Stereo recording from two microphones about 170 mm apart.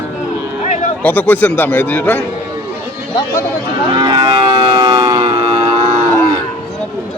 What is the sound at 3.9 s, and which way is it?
Moo, 25° right (ahead or behind).